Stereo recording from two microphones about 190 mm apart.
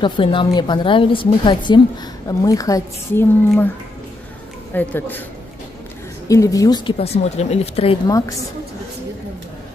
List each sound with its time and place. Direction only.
0.0 s speech: 25° left (ahead or behind)
4.7 s speech: 10° left (ahead or behind)
6.2 s speech: 15° left (ahead or behind)